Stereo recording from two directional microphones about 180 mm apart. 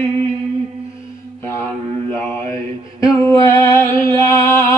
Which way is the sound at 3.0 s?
15° left (ahead or behind).